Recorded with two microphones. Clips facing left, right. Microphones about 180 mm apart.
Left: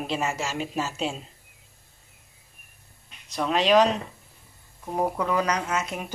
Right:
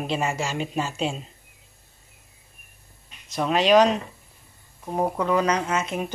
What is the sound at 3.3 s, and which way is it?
Speech, centre (ahead or behind).